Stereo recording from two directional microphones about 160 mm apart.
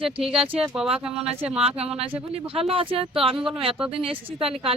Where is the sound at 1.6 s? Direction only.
40° right (ahead or behind).